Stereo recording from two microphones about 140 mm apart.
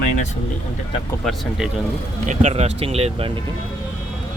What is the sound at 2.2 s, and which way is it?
Speech, 55° right (ahead or behind).